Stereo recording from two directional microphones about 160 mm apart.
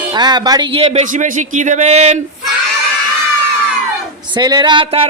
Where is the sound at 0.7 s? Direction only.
35° right (ahead or behind).